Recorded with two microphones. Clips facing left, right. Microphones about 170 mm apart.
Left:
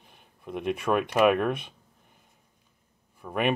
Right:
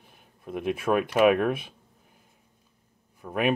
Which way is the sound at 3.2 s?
Centre (ahead or behind).